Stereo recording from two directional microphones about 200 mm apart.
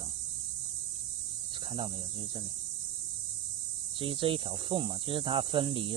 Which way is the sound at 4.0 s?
25° right (ahead or behind).